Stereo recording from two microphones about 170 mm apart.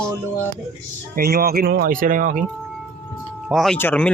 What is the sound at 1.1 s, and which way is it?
Speech, 60° right (ahead or behind).